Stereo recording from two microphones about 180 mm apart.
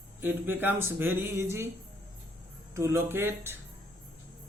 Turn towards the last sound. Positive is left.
turn(degrees=-10)  # may be behind; listen again after turning